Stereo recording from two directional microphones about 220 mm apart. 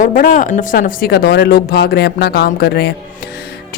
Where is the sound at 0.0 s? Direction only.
35° left (ahead or behind).